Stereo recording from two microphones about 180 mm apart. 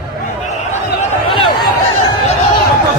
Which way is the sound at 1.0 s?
35° left (ahead or behind).